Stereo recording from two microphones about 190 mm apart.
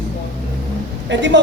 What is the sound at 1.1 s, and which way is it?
Speech, 70° right (ahead or behind).